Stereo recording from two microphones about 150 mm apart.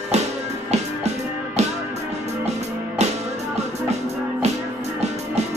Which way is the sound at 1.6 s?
45° right (ahead or behind).